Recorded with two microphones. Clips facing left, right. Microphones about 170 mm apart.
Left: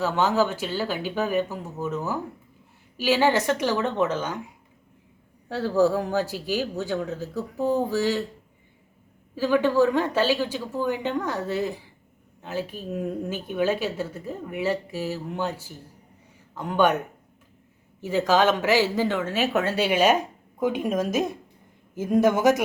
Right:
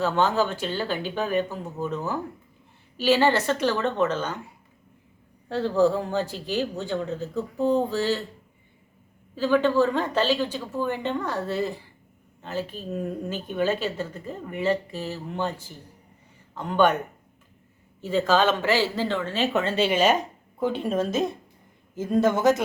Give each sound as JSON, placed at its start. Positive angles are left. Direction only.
{"t": 0.0, "sound": "a woman's voice", "side_deg": 10}
{"t": 5.5, "sound": "a woman's voice", "side_deg": 10}
{"t": 9.3, "sound": "a woman's voice", "side_deg": 10}
{"t": 18.0, "sound": "a woman's voice", "side_deg": 10}